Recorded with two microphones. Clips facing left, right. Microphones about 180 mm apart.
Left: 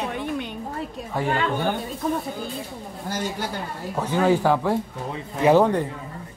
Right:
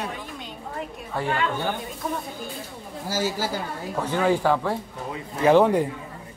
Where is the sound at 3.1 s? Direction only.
5° right (ahead or behind).